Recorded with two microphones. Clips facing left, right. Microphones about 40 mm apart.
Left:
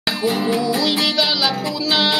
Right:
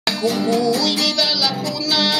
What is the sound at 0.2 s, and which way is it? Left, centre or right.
Music, left.